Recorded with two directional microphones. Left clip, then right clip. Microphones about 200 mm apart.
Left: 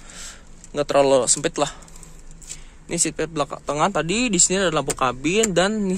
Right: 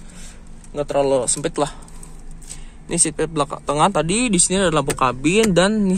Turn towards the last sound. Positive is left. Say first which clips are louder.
# right 3 dB
turn(degrees=5)  # may be behind; listen again after turning